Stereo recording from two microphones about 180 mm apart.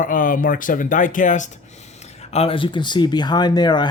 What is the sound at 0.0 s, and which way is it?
Speech, 50° left (ahead or behind).